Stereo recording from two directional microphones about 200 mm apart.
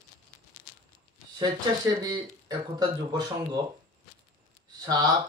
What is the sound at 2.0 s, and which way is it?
Speech, 20° right (ahead or behind).